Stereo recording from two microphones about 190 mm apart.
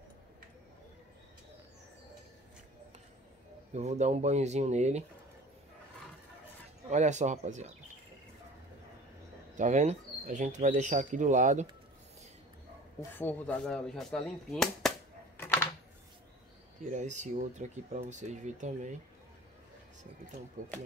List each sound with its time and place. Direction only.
3.7 s speech: 35° right (ahead or behind)
6.9 s speech: 40° right (ahead or behind)
9.6 s speech: 40° right (ahead or behind)
13.2 s speech: 10° left (ahead or behind)
15.3 s typing: 10° left (ahead or behind)
16.9 s speech: 40° right (ahead or behind)